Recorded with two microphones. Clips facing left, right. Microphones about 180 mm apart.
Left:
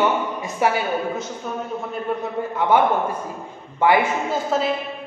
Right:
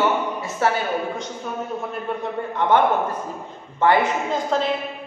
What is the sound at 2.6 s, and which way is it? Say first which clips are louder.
A man's voice: even; 10° left (ahead or behind).